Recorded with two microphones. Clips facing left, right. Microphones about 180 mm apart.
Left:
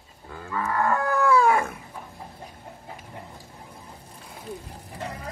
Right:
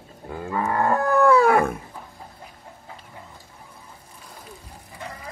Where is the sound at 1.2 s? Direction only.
60° right (ahead or behind).